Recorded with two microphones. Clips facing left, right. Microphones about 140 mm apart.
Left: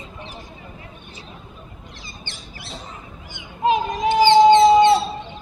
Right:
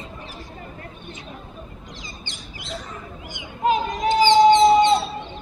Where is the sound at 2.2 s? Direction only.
15° right (ahead or behind).